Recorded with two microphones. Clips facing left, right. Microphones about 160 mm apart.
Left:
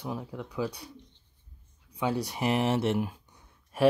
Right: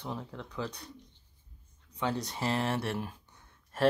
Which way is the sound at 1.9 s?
10° left (ahead or behind).